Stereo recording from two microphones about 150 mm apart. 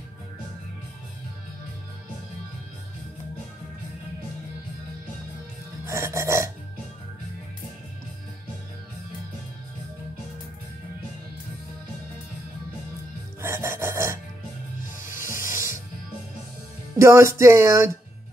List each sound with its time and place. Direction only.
5.9 s filing: 20° right (ahead or behind)
13.4 s filing: 15° right (ahead or behind)
15.0 s snake: 15° right (ahead or behind)
17.0 s music: 20° right (ahead or behind)